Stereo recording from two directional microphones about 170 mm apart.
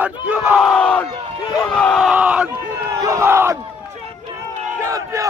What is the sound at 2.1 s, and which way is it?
Crowd, 10° right (ahead or behind).